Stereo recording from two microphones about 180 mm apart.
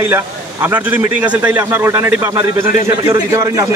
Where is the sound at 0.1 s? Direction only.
10° right (ahead or behind).